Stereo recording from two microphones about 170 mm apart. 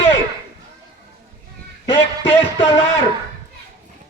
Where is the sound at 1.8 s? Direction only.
15° left (ahead or behind).